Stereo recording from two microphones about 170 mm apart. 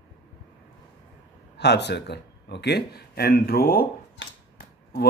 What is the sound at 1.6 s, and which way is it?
Speech, 80° left.